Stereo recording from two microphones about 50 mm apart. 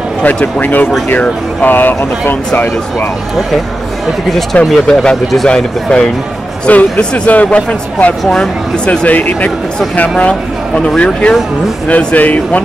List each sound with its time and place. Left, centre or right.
0.2 s speech: left
4.7 s speech: centre
6.7 s speech: left
8.2 s speech: centre
8.8 s speech: left
9.1 s speech: left
9.9 s speech: left